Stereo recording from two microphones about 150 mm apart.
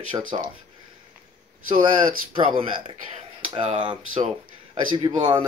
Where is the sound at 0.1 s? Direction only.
30° right (ahead or behind).